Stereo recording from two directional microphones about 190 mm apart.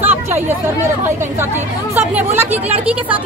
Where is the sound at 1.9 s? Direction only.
10° right (ahead or behind).